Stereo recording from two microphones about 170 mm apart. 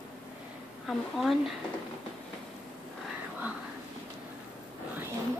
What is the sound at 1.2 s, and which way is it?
Speech, centre (ahead or behind).